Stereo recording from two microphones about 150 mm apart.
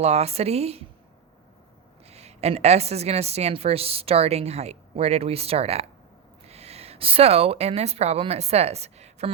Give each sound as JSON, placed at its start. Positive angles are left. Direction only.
{"t": 0.0, "sound": "a woman's voice", "side_deg": -45}
{"t": 2.0, "sound": "a woman's voice", "side_deg": -45}